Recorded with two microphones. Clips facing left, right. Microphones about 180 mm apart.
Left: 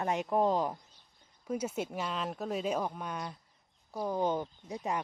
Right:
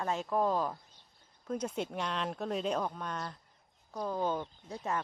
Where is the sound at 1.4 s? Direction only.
10° left (ahead or behind).